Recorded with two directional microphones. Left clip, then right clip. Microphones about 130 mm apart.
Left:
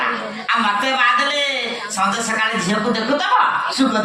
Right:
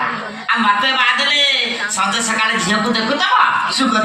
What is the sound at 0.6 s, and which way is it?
Speech, 15° left (ahead or behind).